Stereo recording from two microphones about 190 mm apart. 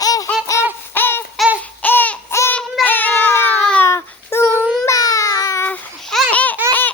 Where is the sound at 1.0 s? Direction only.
10° left (ahead or behind).